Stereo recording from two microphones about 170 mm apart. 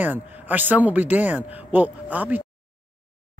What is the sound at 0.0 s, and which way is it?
Speech, 10° right (ahead or behind).